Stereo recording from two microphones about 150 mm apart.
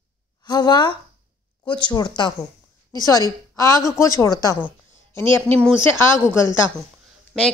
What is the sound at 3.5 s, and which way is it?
Speech, 20° left (ahead or behind).